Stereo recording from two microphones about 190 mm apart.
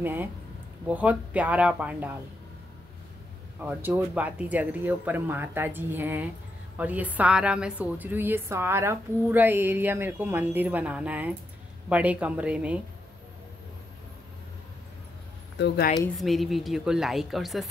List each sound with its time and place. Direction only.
0.0 s a woman's voice: 10° right (ahead or behind)
3.6 s a woman's voice: 10° right (ahead or behind)
15.5 s speech: 60° left (ahead or behind)
16.2 s a woman's voice: centre (ahead or behind)